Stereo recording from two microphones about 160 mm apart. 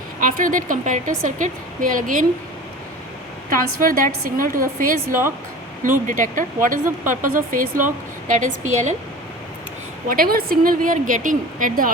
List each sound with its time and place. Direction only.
0.2 s a woman's voice: 60° right (ahead or behind)
3.5 s a woman's voice: 60° right (ahead or behind)
10.1 s a woman's voice: 65° right (ahead or behind)